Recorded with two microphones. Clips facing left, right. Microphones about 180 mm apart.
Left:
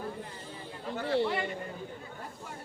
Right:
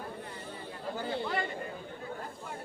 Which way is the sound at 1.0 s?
75° left (ahead or behind).